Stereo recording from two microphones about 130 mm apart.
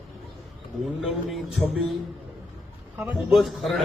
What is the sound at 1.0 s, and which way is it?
Speech, centre (ahead or behind).